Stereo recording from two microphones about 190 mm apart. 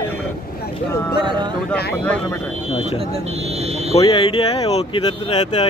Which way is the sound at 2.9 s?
30° right (ahead or behind).